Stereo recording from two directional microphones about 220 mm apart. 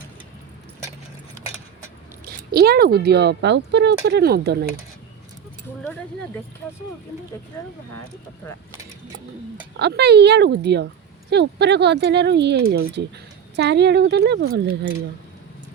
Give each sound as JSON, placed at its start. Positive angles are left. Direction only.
{"t": 2.2, "sound": "speech", "side_deg": -45}
{"t": 5.8, "sound": "speech", "side_deg": 5}
{"t": 9.7, "sound": "speech", "side_deg": -50}